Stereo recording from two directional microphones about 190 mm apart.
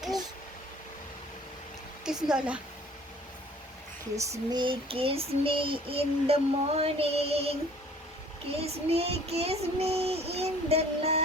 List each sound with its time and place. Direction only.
2.0 s speech: 5° right (ahead or behind)
4.1 s child singing: 15° right (ahead or behind)
8.6 s child singing: 30° right (ahead or behind)